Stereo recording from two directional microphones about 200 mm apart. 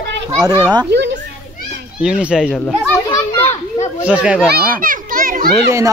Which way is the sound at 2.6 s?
5° left (ahead or behind).